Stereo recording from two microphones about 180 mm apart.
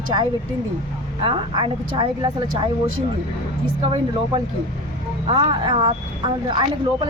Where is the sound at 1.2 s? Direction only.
30° right (ahead or behind).